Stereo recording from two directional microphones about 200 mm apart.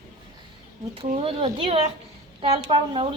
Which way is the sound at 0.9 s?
30° right (ahead or behind).